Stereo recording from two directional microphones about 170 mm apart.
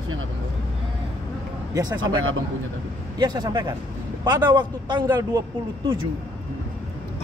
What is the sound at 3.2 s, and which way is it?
Speech, 25° right (ahead or behind).